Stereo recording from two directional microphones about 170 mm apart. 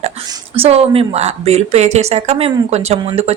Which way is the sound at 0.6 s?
35° right (ahead or behind).